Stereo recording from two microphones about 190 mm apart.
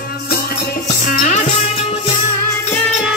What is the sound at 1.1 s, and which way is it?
Music, 45° left (ahead or behind).